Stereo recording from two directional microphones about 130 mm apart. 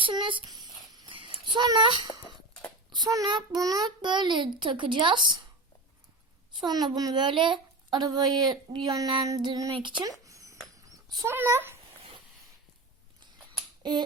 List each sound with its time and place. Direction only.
0.0 s a child's voice: 35° right (ahead or behind)
0.9 s a sound: 40° right (ahead or behind)
2.9 s a child's voice: 30° right (ahead or behind)
6.6 s a child's voice: 30° right (ahead or behind)
9.7 s a sound: 35° right (ahead or behind)
10.8 s dog: 25° right (ahead or behind)